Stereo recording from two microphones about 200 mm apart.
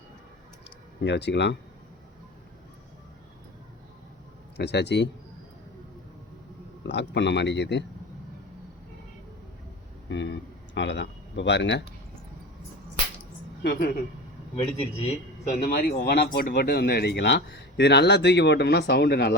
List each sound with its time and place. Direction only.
1.0 s speech: 60° left (ahead or behind)
4.5 s speech: 60° left (ahead or behind)
6.8 s speech: 60° left (ahead or behind)
10.1 s speech: 60° left (ahead or behind)
13.6 s a woman's voice: 50° left (ahead or behind)
14.5 s speech: 30° left (ahead or behind)
15.4 s speech: 40° left (ahead or behind)